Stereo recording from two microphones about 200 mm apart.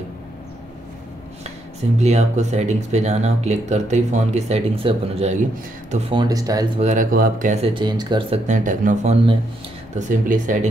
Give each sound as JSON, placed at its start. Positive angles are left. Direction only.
{"t": 2.0, "sound": "speech", "side_deg": -35}
{"t": 6.8, "sound": "speech", "side_deg": -40}
{"t": 7.7, "sound": "speech", "side_deg": -20}